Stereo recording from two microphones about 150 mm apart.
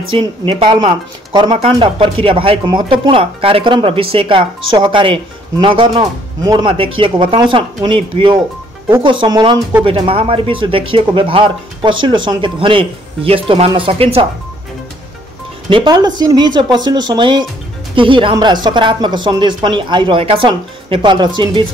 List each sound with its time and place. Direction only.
0.1 s speech: 35° right (ahead or behind)
15.7 s speech: 30° right (ahead or behind)